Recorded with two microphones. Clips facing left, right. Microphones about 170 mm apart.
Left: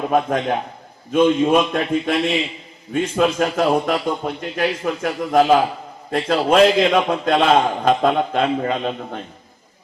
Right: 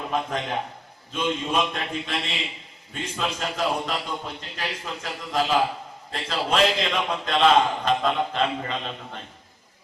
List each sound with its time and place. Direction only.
0.1 s a man's voice: 55° left (ahead or behind)